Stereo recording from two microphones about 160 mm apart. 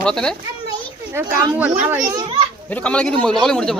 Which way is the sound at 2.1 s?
25° right (ahead or behind).